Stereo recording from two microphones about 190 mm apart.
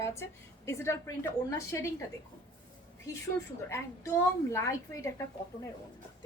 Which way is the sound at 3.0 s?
15° left (ahead or behind).